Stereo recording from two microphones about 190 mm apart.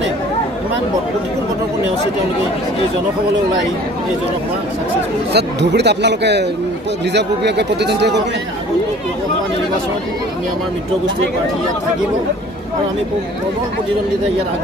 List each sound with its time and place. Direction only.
5.3 s speech: 65° right (ahead or behind)